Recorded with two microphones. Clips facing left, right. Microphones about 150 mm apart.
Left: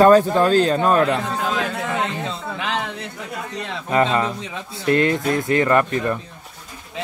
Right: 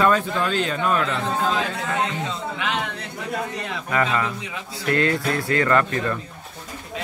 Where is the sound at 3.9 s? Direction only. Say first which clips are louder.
Left 4 dB; 25° left (ahead or behind).